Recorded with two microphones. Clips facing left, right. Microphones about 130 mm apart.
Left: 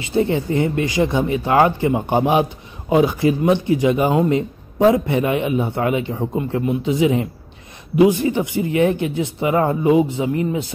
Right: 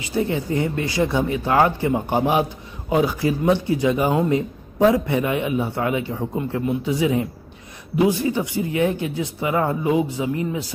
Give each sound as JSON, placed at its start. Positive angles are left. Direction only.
{"t": 0.1, "sound": "a man's voice", "side_deg": 25}